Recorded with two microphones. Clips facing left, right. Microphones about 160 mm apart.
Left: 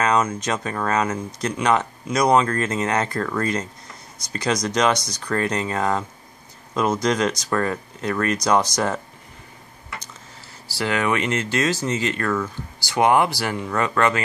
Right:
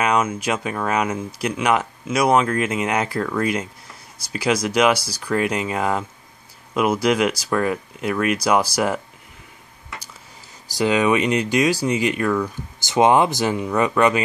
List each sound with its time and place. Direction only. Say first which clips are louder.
0.0 s speech: even; 10° right (ahead or behind)
10.7 s speech: right 5 dB; 15° right (ahead or behind)